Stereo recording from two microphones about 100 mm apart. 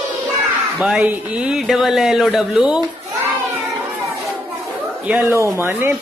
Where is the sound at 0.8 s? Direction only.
10° right (ahead or behind).